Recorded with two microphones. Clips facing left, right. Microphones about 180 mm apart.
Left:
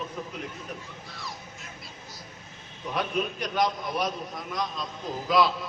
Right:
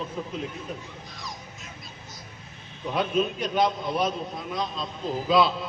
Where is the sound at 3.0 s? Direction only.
25° right (ahead or behind).